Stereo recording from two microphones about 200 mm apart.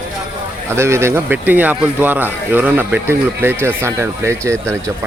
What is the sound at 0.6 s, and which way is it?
Speech, 15° right (ahead or behind).